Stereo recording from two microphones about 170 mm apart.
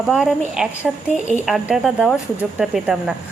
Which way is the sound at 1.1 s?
45° right (ahead or behind).